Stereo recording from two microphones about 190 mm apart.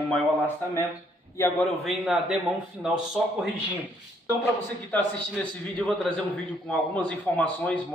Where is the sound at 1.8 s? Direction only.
Centre (ahead or behind).